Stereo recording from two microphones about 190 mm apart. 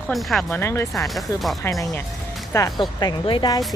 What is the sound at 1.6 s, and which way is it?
Speech, 15° left (ahead or behind).